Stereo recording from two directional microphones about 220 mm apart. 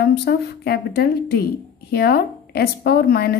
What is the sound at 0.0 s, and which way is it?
Speech, 45° left (ahead or behind).